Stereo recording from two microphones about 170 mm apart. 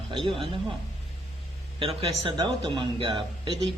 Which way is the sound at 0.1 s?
30° right (ahead or behind).